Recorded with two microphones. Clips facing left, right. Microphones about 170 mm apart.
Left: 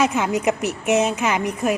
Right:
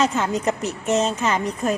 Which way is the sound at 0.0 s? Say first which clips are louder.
Left 1 dB; 10° left (ahead or behind).